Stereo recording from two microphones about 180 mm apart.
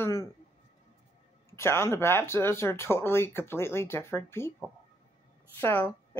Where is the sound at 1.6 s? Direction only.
15° left (ahead or behind).